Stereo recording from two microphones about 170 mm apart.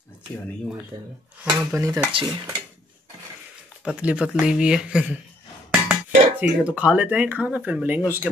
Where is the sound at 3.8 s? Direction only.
5° right (ahead or behind).